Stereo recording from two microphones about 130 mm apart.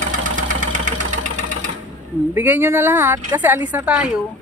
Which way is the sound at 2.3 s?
15° right (ahead or behind).